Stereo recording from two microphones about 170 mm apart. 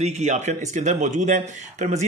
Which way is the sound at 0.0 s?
40° right (ahead or behind).